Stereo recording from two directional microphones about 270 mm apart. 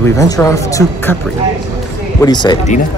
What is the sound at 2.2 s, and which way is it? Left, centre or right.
Speech, centre.